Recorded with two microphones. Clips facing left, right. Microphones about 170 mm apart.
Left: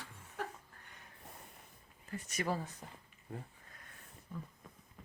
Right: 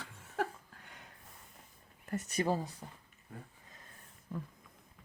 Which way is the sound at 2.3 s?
30° right (ahead or behind).